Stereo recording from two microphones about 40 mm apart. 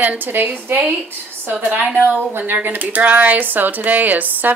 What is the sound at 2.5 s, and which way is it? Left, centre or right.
Speech, right.